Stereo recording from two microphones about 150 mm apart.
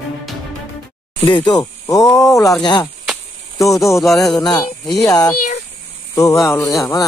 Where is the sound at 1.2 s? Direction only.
30° left (ahead or behind).